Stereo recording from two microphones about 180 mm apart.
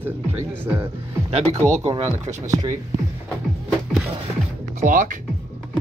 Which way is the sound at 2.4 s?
20° right (ahead or behind).